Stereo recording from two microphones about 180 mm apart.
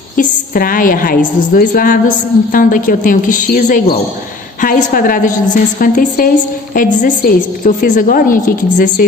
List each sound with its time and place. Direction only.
0.2 s a woman's voice: 50° left (ahead or behind)